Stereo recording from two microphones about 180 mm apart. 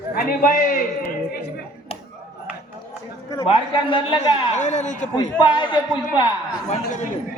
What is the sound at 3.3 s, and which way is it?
Speech, 25° left (ahead or behind).